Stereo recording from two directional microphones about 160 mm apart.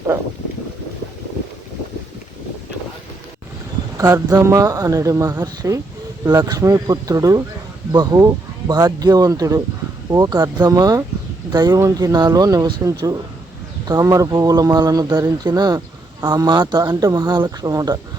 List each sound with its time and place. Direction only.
3.9 s speech: 20° right (ahead or behind)